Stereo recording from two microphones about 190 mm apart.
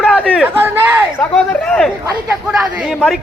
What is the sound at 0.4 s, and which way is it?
Speech, 10° right (ahead or behind).